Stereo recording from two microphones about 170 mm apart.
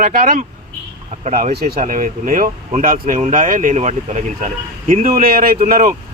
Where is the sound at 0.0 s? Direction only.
55° right (ahead or behind).